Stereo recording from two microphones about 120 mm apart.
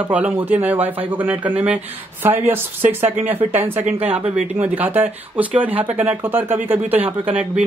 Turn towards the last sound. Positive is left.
turn(degrees=-10)  # may be behind; listen again after turning